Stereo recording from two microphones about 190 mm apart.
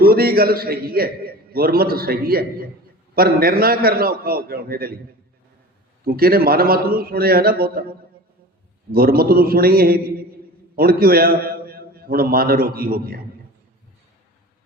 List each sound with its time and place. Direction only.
0.0 s a man's voice: 50° right (ahead or behind)
6.1 s a man's voice: 50° right (ahead or behind)